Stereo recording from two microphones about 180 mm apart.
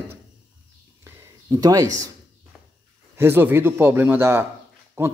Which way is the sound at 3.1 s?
10° right (ahead or behind).